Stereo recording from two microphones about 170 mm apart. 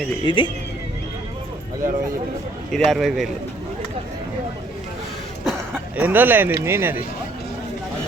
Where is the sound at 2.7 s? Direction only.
Centre (ahead or behind).